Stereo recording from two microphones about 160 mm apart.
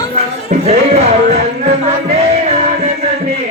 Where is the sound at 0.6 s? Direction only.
40° right (ahead or behind).